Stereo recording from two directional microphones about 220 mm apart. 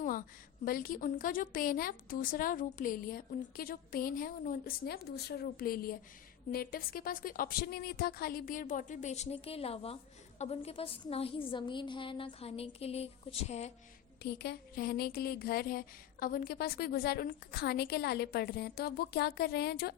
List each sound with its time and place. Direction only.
0.0 s a woman's voice: 40° left (ahead or behind)
14.2 s a woman's voice: 50° left (ahead or behind)